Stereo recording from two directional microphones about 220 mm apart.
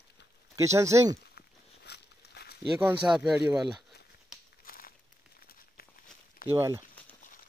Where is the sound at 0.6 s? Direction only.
15° right (ahead or behind).